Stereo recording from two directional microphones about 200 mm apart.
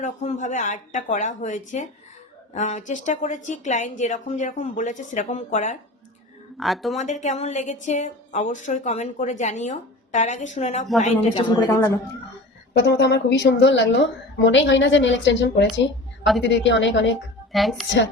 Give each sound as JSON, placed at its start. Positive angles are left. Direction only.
{"t": 0.0, "sound": "a woman's voice", "side_deg": 35}
{"t": 6.6, "sound": "a woman's voice", "side_deg": 0}
{"t": 6.9, "sound": "a woman's voice", "side_deg": 35}
{"t": 12.7, "sound": "a woman's voice", "side_deg": 55}
{"t": 17.5, "sound": "a woman's voice", "side_deg": 0}
{"t": 17.8, "sound": "a woman's voice", "side_deg": 60}